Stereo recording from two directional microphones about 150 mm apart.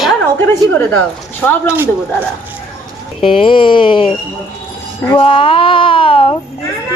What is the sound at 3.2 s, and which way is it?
Speech, 35° left (ahead or behind).